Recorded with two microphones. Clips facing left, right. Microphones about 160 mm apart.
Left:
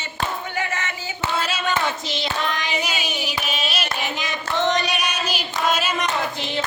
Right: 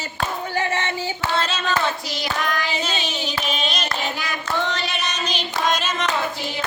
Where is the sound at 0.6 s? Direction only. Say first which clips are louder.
Right 5 dB; 30° right (ahead or behind).